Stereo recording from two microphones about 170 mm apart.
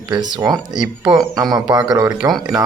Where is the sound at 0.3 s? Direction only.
20° right (ahead or behind).